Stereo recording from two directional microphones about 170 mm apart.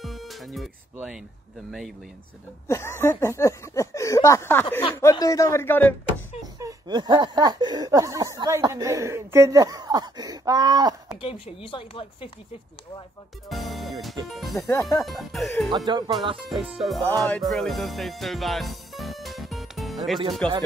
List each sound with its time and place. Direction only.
0.0 s music: centre (ahead or behind)
2.7 s speech: 15° left (ahead or behind)
6.6 s a sound: 25° right (ahead or behind)
11.1 s speech: 35° left (ahead or behind)
13.5 s music: centre (ahead or behind)
14.7 s music: 20° left (ahead or behind)
15.0 s music: centre (ahead or behind)
15.7 s a sound: 25° right (ahead or behind)
16.3 s music: centre (ahead or behind)
20.4 s speech: 10° left (ahead or behind)